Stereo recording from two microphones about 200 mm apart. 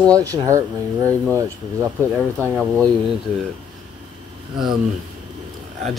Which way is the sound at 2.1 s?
5° right (ahead or behind).